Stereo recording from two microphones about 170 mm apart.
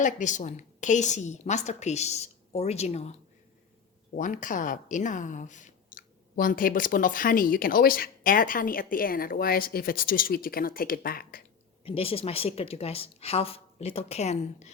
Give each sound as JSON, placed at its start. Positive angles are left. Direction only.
{"t": 0.0, "sound": "a woman's voice", "side_deg": 45}
{"t": 4.1, "sound": "speech", "side_deg": 50}
{"t": 11.9, "sound": "a woman's voice", "side_deg": 35}